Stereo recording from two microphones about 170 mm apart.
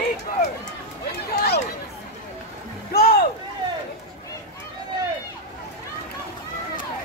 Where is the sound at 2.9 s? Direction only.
65° left (ahead or behind).